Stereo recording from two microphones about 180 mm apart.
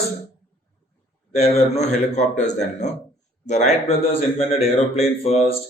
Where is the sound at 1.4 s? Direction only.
35° left (ahead or behind).